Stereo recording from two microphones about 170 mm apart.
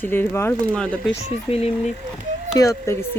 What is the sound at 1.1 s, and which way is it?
Speech, 35° left (ahead or behind).